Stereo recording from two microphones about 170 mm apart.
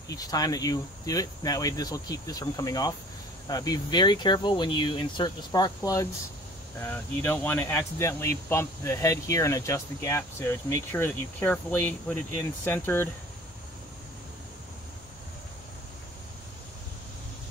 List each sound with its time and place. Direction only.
0.1 s speech: 20° left (ahead or behind)